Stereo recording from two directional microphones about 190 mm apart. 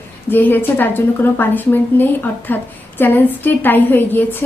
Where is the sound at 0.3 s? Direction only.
10° left (ahead or behind).